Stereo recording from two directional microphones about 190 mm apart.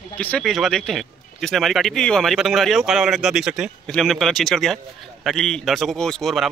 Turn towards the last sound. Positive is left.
turn(degrees=0)  # may be behind; listen again after turning